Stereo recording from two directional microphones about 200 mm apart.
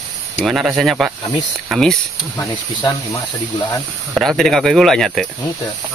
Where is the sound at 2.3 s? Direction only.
15° left (ahead or behind).